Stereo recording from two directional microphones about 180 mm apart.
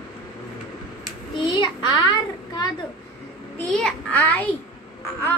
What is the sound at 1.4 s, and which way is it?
Speech, 25° left (ahead or behind).